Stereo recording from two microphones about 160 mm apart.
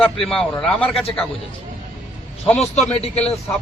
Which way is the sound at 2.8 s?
40° left (ahead or behind).